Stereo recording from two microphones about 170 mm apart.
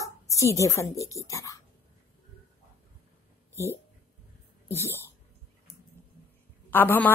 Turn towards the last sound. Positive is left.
turn(degrees=10)  # may be behind; listen again after turning